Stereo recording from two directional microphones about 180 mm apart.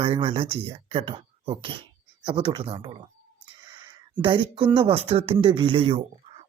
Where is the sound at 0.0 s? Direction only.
30° right (ahead or behind).